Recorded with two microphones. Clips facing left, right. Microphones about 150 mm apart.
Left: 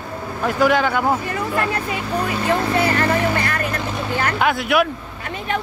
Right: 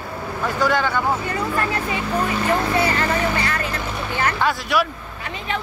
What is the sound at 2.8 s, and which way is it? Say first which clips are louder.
Speech: left 2 dB; 45° left (ahead or behind).